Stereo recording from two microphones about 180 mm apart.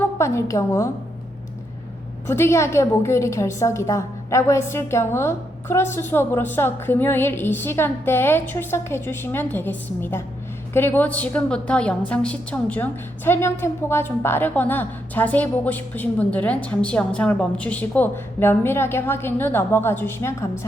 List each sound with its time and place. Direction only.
0.0 s a woman's voice: 15° left (ahead or behind)
2.2 s a woman's voice: 15° left (ahead or behind)